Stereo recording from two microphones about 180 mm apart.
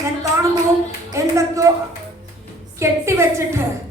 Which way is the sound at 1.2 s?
15° right (ahead or behind).